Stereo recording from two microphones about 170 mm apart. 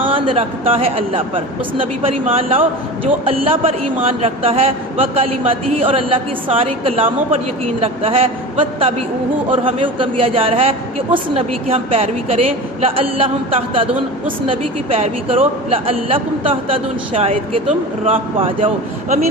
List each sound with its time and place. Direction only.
0.0 s speech: 30° right (ahead or behind)